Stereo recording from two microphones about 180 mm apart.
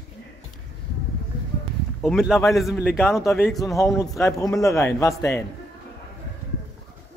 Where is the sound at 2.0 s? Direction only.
5° right (ahead or behind).